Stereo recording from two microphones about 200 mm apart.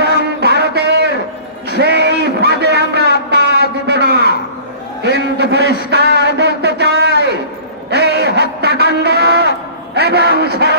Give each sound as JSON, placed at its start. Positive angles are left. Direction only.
{"t": 0.4, "sound": "music", "side_deg": -55}
{"t": 1.7, "sound": "a sound", "side_deg": -55}
{"t": 9.9, "sound": "music", "side_deg": -55}